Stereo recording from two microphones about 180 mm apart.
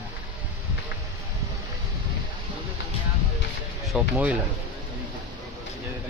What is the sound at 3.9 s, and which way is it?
Speech, 5° right (ahead or behind).